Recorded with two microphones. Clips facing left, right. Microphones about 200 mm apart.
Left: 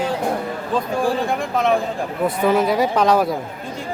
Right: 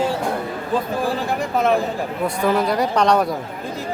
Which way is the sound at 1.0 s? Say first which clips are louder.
Left 2 dB; centre (ahead or behind).